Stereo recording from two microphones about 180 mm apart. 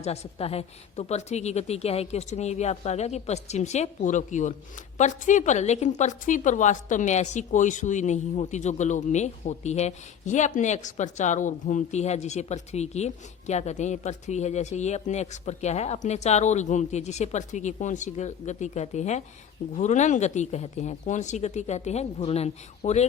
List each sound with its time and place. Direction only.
0.0 s a woman's voice: 35° left (ahead or behind)